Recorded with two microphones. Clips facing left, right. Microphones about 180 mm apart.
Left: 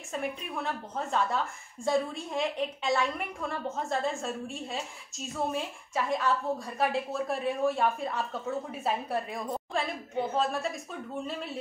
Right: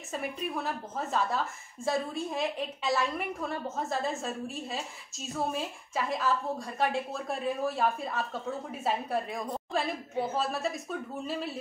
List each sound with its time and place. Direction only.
0.1 s a woman's voice: 5° right (ahead or behind)